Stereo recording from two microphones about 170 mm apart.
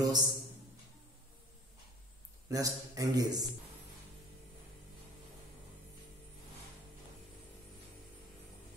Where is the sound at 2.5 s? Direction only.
20° right (ahead or behind).